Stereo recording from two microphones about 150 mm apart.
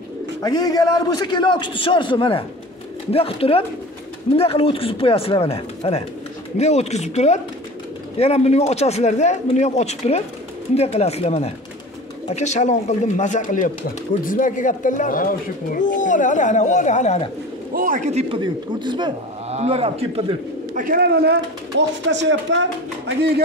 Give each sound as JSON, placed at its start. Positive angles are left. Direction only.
{"t": 0.4, "sound": "a man's voice", "side_deg": 25}
{"t": 17.7, "sound": "a man's voice", "side_deg": -65}
{"t": 18.3, "sound": "a man's voice", "side_deg": -30}
{"t": 19.5, "sound": "a man's voice", "side_deg": -45}
{"t": 20.7, "sound": "speech", "side_deg": -70}